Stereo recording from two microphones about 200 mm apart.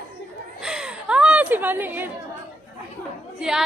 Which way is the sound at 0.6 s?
5° right (ahead or behind).